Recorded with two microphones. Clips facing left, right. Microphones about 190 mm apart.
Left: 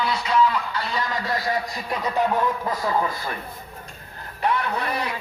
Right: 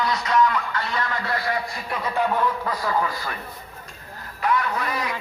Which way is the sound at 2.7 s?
25° left (ahead or behind).